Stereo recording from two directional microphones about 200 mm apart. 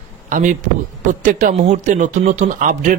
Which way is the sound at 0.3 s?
40° right (ahead or behind).